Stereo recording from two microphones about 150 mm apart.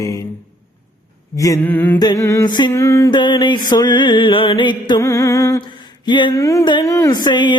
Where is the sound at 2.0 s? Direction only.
25° left (ahead or behind).